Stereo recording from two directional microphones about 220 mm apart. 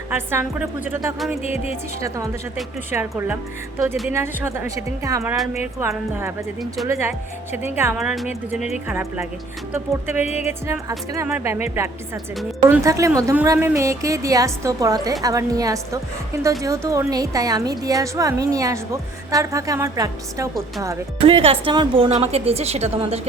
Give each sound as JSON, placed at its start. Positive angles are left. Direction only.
{"t": 0.1, "sound": "a woman's voice", "side_deg": -10}
{"t": 1.4, "sound": "music", "side_deg": 30}
{"t": 1.7, "sound": "a woman's voice", "side_deg": -15}
{"t": 7.9, "sound": "a woman's voice", "side_deg": 0}
{"t": 10.2, "sound": "music", "side_deg": 30}
{"t": 10.7, "sound": "a woman's voice", "side_deg": -15}
{"t": 21.2, "sound": "a woman's voice", "side_deg": -25}